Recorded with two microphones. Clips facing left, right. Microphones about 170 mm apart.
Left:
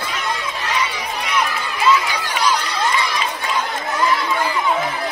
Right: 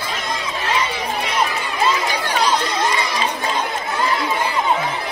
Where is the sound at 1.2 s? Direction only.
30° right (ahead or behind).